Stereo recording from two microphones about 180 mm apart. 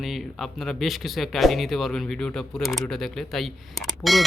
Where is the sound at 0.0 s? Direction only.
Centre (ahead or behind).